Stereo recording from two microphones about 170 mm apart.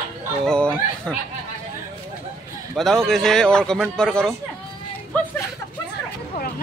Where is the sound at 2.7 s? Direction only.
Centre (ahead or behind).